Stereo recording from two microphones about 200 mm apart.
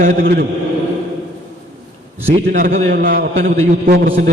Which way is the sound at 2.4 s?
45° right (ahead or behind).